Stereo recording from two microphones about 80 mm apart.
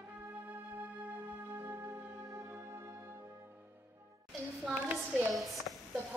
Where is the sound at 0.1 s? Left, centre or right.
Right.